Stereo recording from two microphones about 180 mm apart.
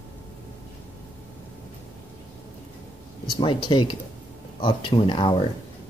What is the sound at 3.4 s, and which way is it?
Speech, 25° left (ahead or behind).